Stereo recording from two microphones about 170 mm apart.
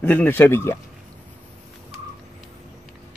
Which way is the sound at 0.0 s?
10° left (ahead or behind).